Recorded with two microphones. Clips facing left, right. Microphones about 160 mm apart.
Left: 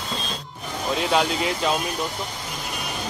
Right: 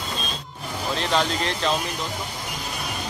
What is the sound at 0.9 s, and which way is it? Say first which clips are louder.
Speech: left 2 dB; 10° left (ahead or behind).